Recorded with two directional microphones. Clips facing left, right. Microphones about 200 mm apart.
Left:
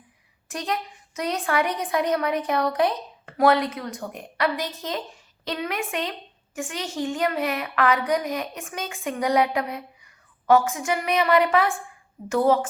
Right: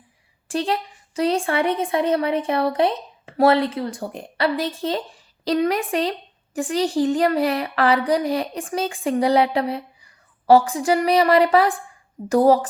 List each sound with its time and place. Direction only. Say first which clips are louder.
0.4 s a woman's voice: right 6 dB; 30° right (ahead or behind)